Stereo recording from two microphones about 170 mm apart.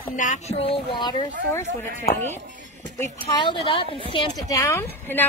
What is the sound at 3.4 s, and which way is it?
A woman's voice, 30° left (ahead or behind).